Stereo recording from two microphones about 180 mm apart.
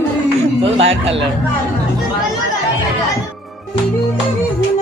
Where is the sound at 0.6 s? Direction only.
35° right (ahead or behind).